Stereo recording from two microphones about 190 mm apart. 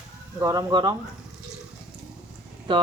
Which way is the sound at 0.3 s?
20° right (ahead or behind).